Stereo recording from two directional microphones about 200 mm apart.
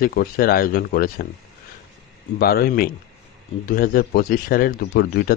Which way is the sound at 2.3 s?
50° left (ahead or behind).